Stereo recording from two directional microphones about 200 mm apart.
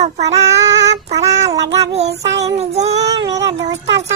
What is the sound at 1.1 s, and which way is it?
Child singing, 15° right (ahead or behind).